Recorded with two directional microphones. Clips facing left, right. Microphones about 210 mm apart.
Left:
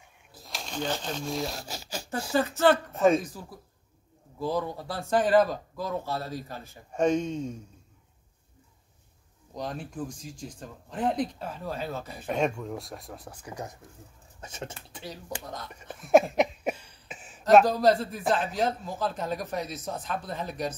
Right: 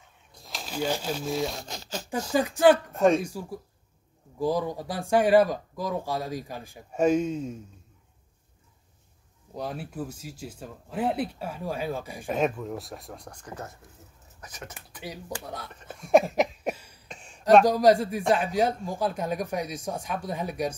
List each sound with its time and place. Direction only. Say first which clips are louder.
0.3 s speech: right 1 dB; centre (ahead or behind)
2.3 s speech: right 3 dB; 15° right (ahead or behind)
2.9 s speech: right 1 dB; centre (ahead or behind)
3.2 s speech: right 4 dB; 10° right (ahead or behind)
9.6 s speech: right 1 dB; 5° right (ahead or behind); by 13.7 s 10° left (ahead or behind)
14.4 s speech: left 4 dB; 25° left (ahead or behind)
15.1 s speech: right 2 dB; 10° right (ahead or behind)
15.7 s a sound: even; 10° left (ahead or behind); by 17.0 s 10° right (ahead or behind)
17.1 s a sound: right 1 dB; 5° left (ahead or behind)
17.6 s speech: right 3 dB; 15° right (ahead or behind)